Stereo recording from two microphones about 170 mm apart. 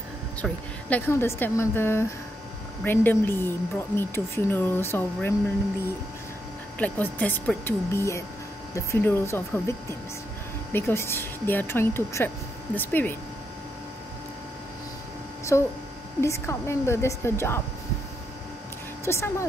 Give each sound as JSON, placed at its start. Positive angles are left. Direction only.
{"t": 0.4, "sound": "a woman's voice", "side_deg": 10}
{"t": 6.8, "sound": "a woman's voice", "side_deg": 10}
{"t": 15.5, "sound": "a woman's voice", "side_deg": 15}
{"t": 19.0, "sound": "a woman's voice", "side_deg": 15}